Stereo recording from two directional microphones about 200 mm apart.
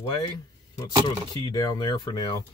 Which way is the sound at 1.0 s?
20° left (ahead or behind).